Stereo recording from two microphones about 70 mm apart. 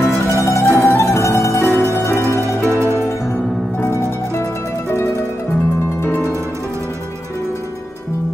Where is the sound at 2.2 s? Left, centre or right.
Right.